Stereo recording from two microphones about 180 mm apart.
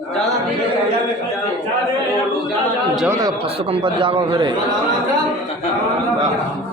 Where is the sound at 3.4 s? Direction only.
30° right (ahead or behind).